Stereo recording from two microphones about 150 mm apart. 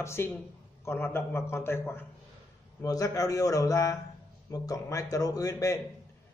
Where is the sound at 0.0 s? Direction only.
15° left (ahead or behind).